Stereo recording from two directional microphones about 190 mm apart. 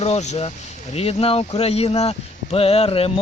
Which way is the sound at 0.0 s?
35° left (ahead or behind).